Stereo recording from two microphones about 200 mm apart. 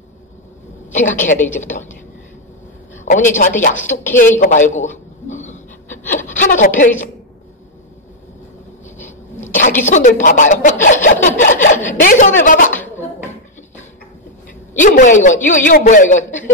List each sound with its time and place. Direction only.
0.9 s speech: 40° left (ahead or behind)
3.1 s a woman's voice: 40° left (ahead or behind)
6.1 s a sound: 40° left (ahead or behind)
8.9 s a sound: 10° left (ahead or behind)
9.5 s speech: 40° left (ahead or behind)
14.7 s speech: 40° left (ahead or behind)